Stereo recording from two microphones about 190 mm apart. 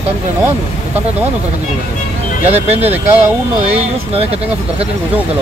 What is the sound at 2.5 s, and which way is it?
Speech, 35° right (ahead or behind).